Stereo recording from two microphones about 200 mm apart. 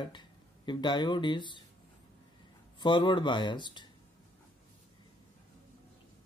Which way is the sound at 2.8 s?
25° left (ahead or behind).